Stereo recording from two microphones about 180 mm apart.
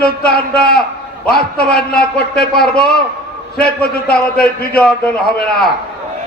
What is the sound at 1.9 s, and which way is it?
Speech, 5° left (ahead or behind).